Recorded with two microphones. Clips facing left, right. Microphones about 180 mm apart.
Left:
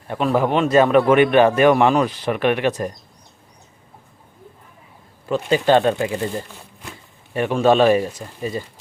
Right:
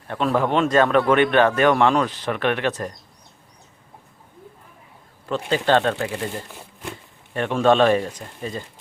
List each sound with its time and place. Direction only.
0.1 s speech: 10° left (ahead or behind)
5.3 s speech: 10° left (ahead or behind)
7.3 s speech: 5° left (ahead or behind)